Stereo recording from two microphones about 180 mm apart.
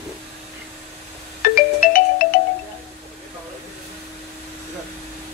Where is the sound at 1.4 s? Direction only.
50° left (ahead or behind).